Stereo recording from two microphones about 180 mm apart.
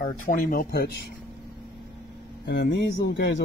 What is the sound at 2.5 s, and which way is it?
Speech, 75° left (ahead or behind).